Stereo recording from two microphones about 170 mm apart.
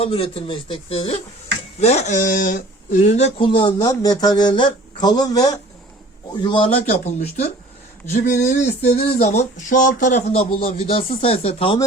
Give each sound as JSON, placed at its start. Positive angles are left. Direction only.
{"t": 0.0, "sound": "a man's voice", "side_deg": 35}
{"t": 6.8, "sound": "a man's voice", "side_deg": 40}